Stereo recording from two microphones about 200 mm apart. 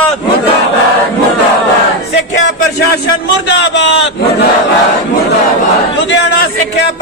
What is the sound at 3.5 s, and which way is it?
Speech, 65° left (ahead or behind).